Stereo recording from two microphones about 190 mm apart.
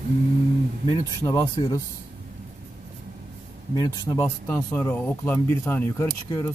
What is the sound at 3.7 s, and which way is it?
Speech, 20° left (ahead or behind).